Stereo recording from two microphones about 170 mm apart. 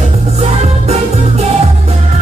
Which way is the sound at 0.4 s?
40° right (ahead or behind).